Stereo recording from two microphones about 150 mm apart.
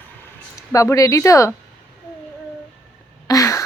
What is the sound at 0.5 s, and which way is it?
Speech, 20° left (ahead or behind).